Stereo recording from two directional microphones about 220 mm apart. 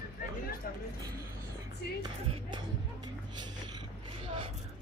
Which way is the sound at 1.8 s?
50° left (ahead or behind).